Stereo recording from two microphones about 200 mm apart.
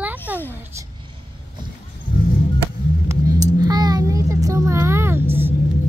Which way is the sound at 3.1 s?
20° right (ahead or behind).